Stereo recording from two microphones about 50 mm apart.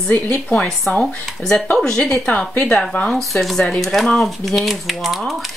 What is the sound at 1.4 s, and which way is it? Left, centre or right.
Speech, left.